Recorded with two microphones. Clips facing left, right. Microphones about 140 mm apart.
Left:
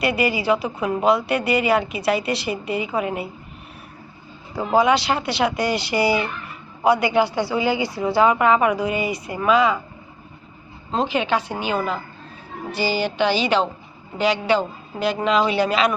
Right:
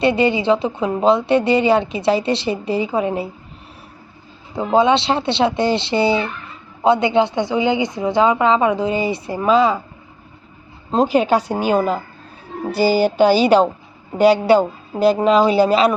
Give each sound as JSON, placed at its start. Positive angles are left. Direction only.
{"t": 0.0, "sound": "a woman's voice", "side_deg": -25}
{"t": 4.7, "sound": "a woman's voice", "side_deg": -25}
{"t": 10.9, "sound": "speech", "side_deg": -40}